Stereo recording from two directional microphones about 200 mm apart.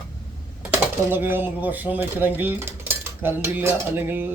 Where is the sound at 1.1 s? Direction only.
10° right (ahead or behind).